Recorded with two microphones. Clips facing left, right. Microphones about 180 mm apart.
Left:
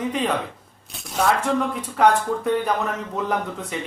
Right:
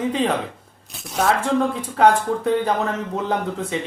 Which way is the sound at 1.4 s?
30° right (ahead or behind).